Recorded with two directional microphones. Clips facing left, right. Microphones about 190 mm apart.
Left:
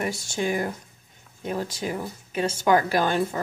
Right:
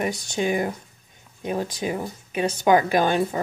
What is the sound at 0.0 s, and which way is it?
A woman's voice, 20° right (ahead or behind).